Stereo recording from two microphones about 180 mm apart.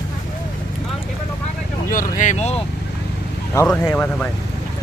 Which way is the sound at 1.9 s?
45° left (ahead or behind).